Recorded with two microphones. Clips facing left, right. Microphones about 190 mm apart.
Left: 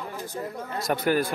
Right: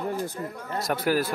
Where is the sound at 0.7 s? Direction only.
5° right (ahead or behind).